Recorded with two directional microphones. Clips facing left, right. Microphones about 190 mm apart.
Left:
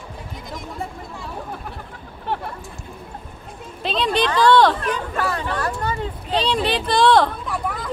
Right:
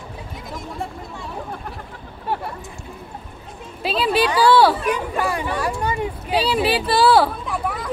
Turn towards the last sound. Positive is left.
turn(degrees=0)  # may be behind; listen again after turning